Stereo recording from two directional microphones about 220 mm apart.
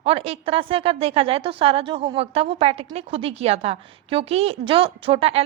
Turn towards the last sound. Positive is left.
turn(degrees=-25)  # may be behind; listen again after turning